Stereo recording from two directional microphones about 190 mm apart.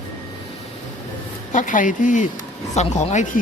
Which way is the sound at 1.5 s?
45° left (ahead or behind).